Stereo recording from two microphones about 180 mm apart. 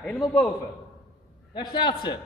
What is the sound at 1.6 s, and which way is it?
Speech, 25° left (ahead or behind).